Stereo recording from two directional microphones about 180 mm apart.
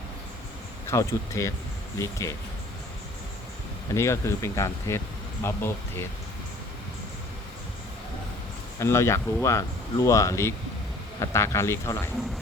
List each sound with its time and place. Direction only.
0.9 s speech: 15° left (ahead or behind)
3.9 s speech: 15° left (ahead or behind)
8.8 s speech: 15° left (ahead or behind)